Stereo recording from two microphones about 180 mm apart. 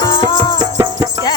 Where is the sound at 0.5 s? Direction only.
25° right (ahead or behind).